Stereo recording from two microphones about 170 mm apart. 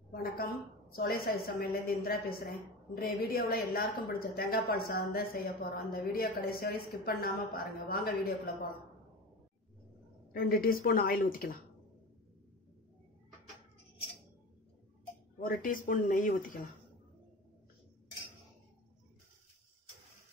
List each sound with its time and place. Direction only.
0.1 s a woman's voice: 60° left (ahead or behind)
10.3 s a woman's voice: 60° left (ahead or behind)
15.3 s speech: 55° left (ahead or behind)